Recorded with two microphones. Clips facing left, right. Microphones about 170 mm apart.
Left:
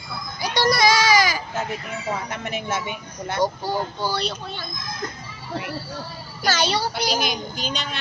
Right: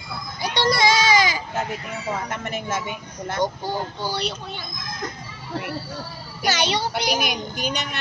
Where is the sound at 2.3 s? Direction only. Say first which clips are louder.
Even; 50° right (ahead or behind).